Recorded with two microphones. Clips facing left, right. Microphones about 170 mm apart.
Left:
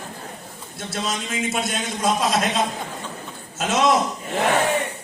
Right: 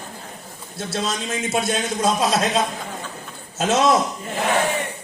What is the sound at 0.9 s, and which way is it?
A man's voice, 30° right (ahead or behind).